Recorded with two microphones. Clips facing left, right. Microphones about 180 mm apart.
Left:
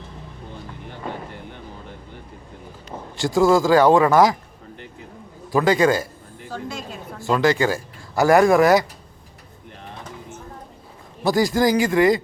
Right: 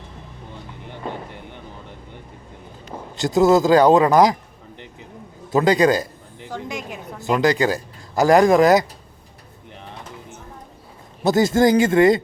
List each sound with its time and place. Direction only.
3.2 s speech: 20° right (ahead or behind)
5.5 s a woman's voice: 20° right (ahead or behind)
11.2 s speech: 25° right (ahead or behind)